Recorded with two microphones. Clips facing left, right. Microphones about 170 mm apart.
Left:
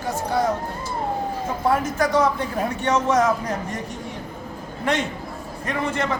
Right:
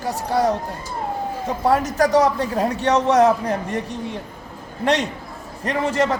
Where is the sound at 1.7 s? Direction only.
40° right (ahead or behind).